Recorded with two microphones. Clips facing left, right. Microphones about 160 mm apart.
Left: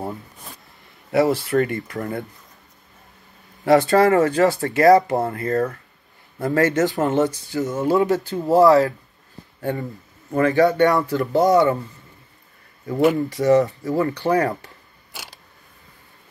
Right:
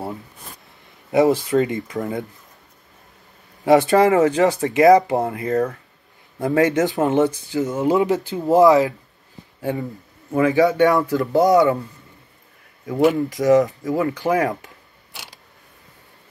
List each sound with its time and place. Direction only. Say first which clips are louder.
1.1 s speech: right 2 dB; 15° right (ahead or behind)
3.6 s speech: right 1 dB; 15° right (ahead or behind)
10.7 s speech: right 1 dB; centre (ahead or behind)
11.0 s speech: right 1 dB; 15° right (ahead or behind)
11.5 s speech: right 1 dB; centre (ahead or behind)
12.8 s speech: right 1 dB; centre (ahead or behind)
13.3 s speech: right 1 dB; 15° right (ahead or behind)